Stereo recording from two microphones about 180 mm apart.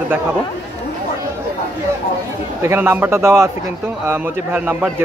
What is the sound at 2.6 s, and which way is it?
A man's voice, 15° right (ahead or behind).